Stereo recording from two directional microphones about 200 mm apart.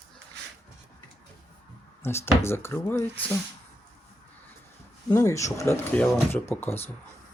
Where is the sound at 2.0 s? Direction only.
10° left (ahead or behind).